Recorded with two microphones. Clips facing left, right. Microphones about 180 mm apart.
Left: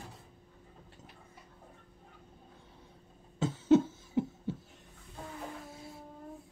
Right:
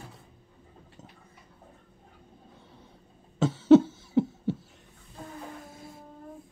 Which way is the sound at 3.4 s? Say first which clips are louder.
Right 7 dB; 80° right.